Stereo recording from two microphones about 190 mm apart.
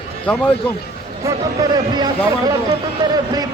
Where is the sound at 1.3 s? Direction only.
20° right (ahead or behind).